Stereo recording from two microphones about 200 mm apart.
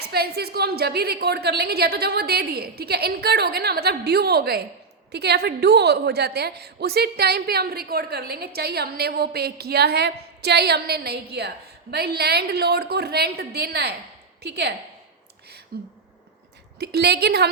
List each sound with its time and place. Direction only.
0.0 s a woman's voice: 55° right (ahead or behind)
15.7 s a woman's voice: 50° right (ahead or behind)